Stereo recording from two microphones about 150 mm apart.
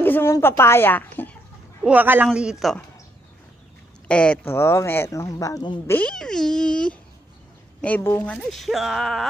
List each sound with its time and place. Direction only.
0.0 s speech: 15° left (ahead or behind)
1.9 s speech: 10° right (ahead or behind)
4.1 s speech: 10° left (ahead or behind); by 5.8 s 25° left (ahead or behind)
5.9 s speech: 10° left (ahead or behind)